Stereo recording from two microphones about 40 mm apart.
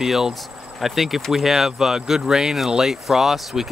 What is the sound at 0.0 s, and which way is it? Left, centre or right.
Speech, centre.